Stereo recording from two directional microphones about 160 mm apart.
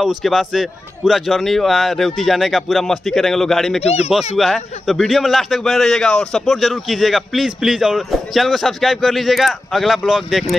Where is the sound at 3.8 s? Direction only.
40° left (ahead or behind).